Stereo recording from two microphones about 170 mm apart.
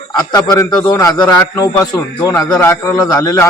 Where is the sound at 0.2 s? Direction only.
25° left (ahead or behind).